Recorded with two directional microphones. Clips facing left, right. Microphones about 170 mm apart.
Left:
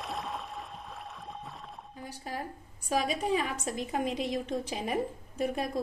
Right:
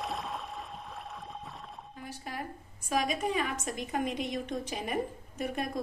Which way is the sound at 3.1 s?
30° left (ahead or behind).